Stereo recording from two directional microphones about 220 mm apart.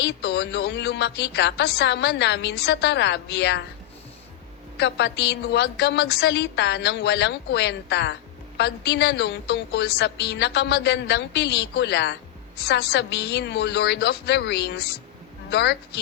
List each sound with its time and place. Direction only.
0.0 s a woman's voice: 50° left (ahead or behind)
4.8 s a woman's voice: 50° left (ahead or behind)